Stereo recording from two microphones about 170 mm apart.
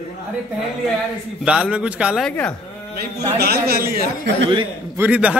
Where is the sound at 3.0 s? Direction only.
65° right (ahead or behind).